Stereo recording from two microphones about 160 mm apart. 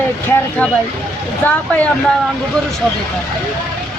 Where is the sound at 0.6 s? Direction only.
10° left (ahead or behind).